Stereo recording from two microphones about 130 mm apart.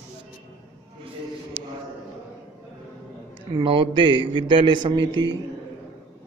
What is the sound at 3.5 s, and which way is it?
A man's voice, 40° right (ahead or behind).